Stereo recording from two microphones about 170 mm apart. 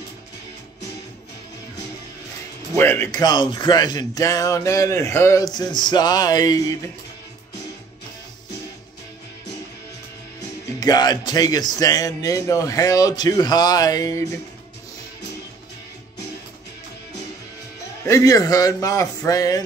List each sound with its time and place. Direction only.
2.7 s speech: 15° left (ahead or behind)
10.8 s speech: 25° left (ahead or behind)
18.0 s speech: 20° left (ahead or behind)